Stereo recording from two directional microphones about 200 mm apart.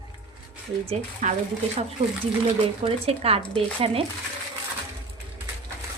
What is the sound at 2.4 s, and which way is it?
A woman's voice, 30° right (ahead or behind).